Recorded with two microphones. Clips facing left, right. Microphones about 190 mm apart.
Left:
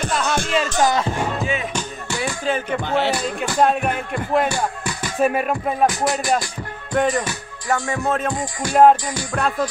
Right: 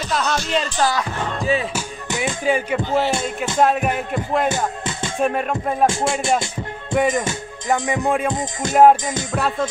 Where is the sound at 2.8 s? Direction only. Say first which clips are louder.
Right 1 dB; 65° left (ahead or behind).